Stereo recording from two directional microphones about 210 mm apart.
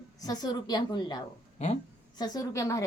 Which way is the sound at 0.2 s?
20° left (ahead or behind).